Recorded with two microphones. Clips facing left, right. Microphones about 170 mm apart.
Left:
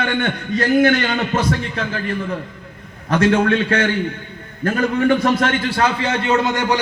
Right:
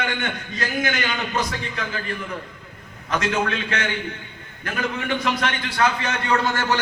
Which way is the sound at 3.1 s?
30° left (ahead or behind).